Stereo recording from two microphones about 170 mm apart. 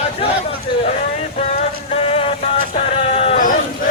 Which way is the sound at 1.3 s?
35° left (ahead or behind).